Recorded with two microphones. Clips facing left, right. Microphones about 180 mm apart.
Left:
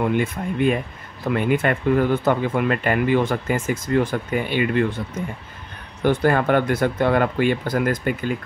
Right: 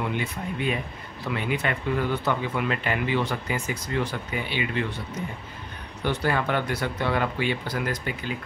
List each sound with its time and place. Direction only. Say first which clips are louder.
0.0 s speech: left 8 dB; 50° left (ahead or behind)
6.0 s speech: left 7 dB; 50° left (ahead or behind)